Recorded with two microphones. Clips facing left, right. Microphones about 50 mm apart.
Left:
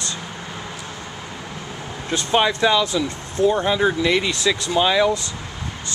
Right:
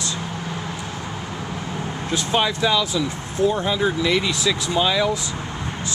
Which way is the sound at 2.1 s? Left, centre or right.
Centre.